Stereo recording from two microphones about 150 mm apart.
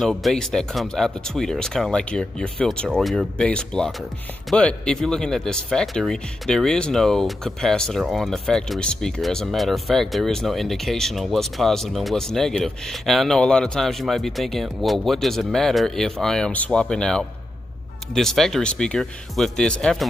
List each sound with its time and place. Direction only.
0.0 s speech: centre (ahead or behind)